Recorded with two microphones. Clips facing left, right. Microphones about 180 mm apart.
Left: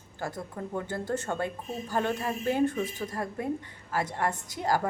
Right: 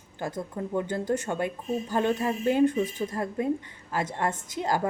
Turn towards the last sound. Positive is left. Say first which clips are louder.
# right 1 dB
turn(degrees=-20)  # may be behind; listen again after turning